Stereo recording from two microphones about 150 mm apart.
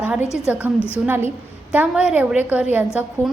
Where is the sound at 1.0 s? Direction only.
15° right (ahead or behind).